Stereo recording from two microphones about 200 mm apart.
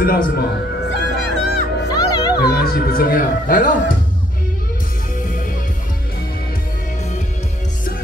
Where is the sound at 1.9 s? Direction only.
20° left (ahead or behind).